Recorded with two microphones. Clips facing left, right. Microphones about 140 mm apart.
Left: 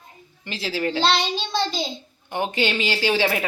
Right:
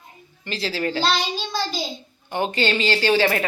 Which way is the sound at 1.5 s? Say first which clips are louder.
Left 3 dB; 25° left (ahead or behind).